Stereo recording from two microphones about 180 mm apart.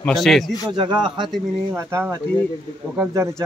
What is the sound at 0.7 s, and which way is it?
Speech, 25° right (ahead or behind).